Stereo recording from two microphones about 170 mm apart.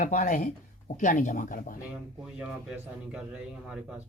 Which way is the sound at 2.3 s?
5° right (ahead or behind).